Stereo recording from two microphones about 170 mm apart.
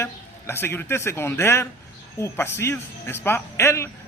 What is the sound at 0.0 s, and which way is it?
A man's voice, 15° left (ahead or behind).